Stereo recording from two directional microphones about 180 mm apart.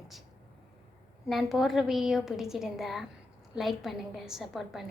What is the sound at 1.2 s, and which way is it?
A woman's voice, centre (ahead or behind).